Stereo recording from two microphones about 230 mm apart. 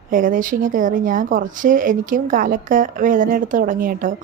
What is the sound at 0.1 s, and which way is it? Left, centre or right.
Speech, right.